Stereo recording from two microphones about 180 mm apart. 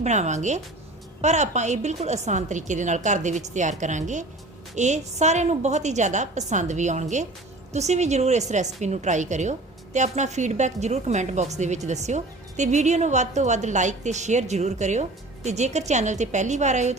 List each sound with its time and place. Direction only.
0.0 s a woman's voice: 40° right (ahead or behind)